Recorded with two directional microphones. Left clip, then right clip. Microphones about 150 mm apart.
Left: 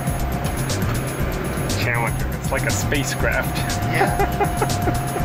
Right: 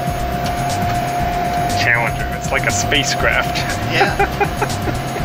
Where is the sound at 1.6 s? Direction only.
5° left (ahead or behind).